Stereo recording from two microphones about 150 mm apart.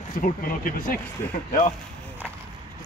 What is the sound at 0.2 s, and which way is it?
Speech, 70° left (ahead or behind).